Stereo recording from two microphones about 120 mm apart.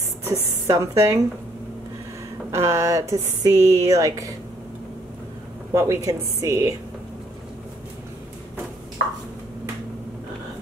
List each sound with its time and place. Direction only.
0.2 s a woman's voice: 25° right (ahead or behind)
2.5 s speech: 25° right (ahead or behind)
5.7 s speech: 25° right (ahead or behind)